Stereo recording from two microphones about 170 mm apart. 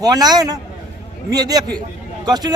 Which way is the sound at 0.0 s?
20° right (ahead or behind).